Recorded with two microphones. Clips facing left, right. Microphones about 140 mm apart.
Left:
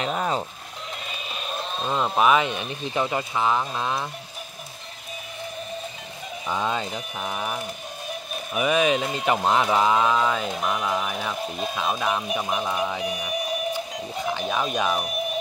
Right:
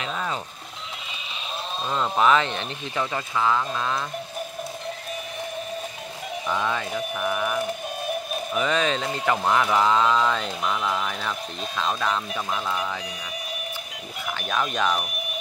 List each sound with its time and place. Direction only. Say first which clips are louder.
0.0 s sheep: left 4 dB; 35° left (ahead or behind)
1.9 s speech: even; 15° left (ahead or behind)
6.5 s speech: even; 20° left (ahead or behind)
8.5 s speech: left 3 dB; 15° left (ahead or behind)